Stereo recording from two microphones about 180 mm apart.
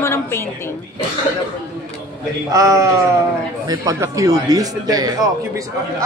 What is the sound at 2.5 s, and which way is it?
A man's voice, 20° right (ahead or behind).